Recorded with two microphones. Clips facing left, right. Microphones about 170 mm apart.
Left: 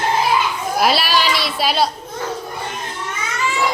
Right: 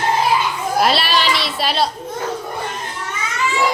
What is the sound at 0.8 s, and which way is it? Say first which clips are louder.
A woman's voice: left 1 dB; centre (ahead or behind).